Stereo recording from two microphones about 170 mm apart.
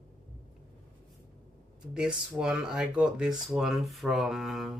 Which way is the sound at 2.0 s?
5° right (ahead or behind).